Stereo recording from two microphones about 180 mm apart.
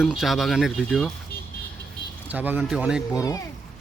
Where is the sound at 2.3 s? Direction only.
10° right (ahead or behind).